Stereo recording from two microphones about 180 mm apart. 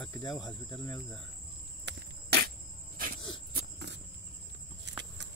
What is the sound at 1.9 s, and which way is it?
Cricket, 70° right (ahead or behind).